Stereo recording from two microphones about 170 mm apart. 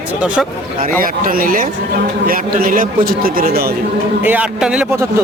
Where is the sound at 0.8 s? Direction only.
55° right (ahead or behind).